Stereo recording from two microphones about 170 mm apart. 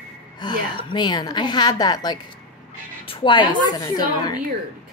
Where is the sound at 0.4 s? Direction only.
25° left (ahead or behind).